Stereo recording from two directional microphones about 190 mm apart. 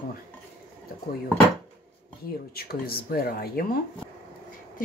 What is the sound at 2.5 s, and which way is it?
A woman's voice, 55° left (ahead or behind).